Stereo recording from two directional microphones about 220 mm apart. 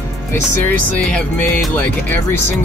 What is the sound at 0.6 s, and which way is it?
Speech, 5° left (ahead or behind).